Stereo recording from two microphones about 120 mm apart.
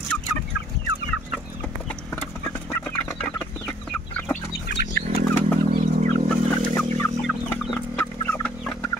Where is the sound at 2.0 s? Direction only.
15° left (ahead or behind).